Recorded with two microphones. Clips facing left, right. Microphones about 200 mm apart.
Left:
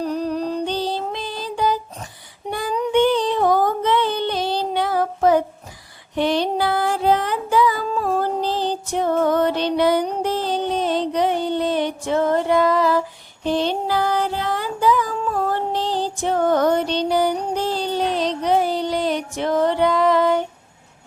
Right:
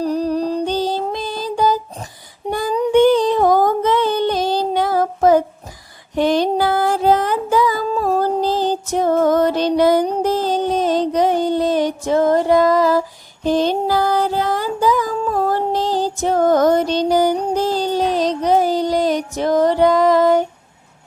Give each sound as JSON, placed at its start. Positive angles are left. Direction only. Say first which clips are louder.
{"t": 0.0, "sound": "music", "louder": "right 4 dB", "side_deg": -35}
{"t": 2.5, "sound": "child singing", "louder": "right 5 dB", "side_deg": -40}
{"t": 6.1, "sound": "music", "louder": "right 4 dB", "side_deg": -45}